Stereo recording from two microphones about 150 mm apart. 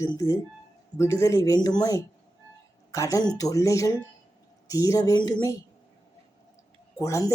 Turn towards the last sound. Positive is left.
turn(degrees=20)  # may be behind; listen again after turning